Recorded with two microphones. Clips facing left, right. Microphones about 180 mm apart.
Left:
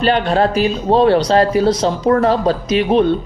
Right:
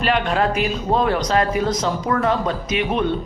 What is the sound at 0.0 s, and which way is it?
Speech, 30° left (ahead or behind).